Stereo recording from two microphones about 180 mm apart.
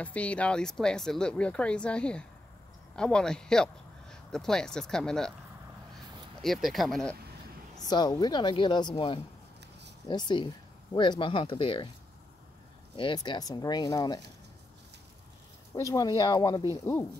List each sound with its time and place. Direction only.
0.0 s speech: 10° left (ahead or behind)
6.4 s speech: centre (ahead or behind)
7.9 s speech: 20° left (ahead or behind)
12.9 s speech: 25° left (ahead or behind)
15.7 s speech: 15° left (ahead or behind)